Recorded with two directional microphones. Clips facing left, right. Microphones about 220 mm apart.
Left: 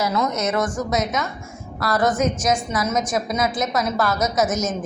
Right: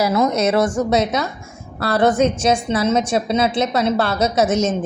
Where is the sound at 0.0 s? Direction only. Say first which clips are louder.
Right 5 dB; 25° right (ahead or behind).